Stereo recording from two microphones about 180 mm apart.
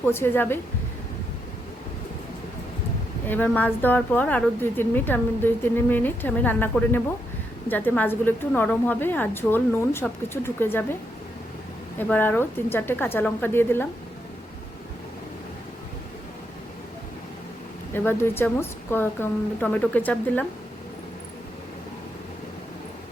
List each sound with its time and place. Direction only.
0.0 s a woman's voice: 10° left (ahead or behind)
3.2 s a woman's voice: 10° left (ahead or behind)
11.9 s a woman's voice: 10° left (ahead or behind)
17.9 s a woman's voice: 10° left (ahead or behind)